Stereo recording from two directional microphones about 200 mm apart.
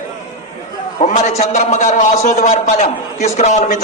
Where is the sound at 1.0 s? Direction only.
35° left (ahead or behind).